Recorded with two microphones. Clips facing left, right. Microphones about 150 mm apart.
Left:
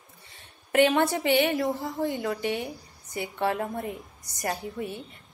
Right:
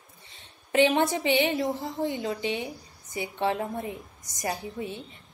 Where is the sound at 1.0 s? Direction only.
20° right (ahead or behind).